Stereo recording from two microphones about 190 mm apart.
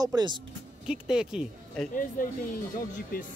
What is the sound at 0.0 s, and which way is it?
Speech, 20° right (ahead or behind).